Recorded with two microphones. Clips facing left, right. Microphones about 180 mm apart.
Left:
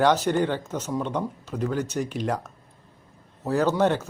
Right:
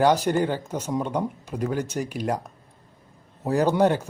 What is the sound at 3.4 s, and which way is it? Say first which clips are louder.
Speech: right 2 dB; 15° right (ahead or behind).